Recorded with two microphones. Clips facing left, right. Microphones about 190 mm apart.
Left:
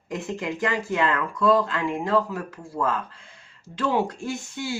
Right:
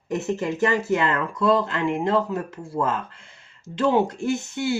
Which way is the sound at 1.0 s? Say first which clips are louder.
Even; 25° right (ahead or behind).